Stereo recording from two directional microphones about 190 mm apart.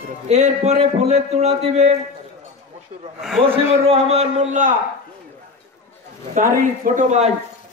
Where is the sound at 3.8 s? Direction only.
30° right (ahead or behind).